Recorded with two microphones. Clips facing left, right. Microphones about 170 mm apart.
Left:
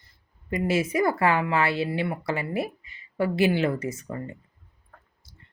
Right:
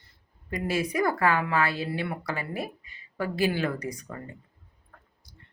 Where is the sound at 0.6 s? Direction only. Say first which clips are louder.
Left 3 dB; 20° left (ahead or behind).